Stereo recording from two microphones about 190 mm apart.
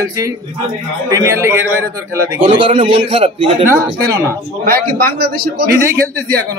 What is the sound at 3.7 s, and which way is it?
Speech, 15° right (ahead or behind).